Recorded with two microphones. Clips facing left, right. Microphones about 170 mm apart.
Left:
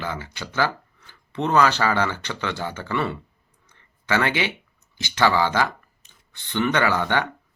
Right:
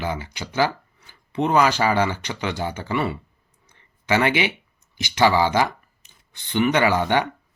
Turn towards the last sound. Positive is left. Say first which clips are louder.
# right 2 dB
turn(degrees=-15)  # may be behind; listen again after turning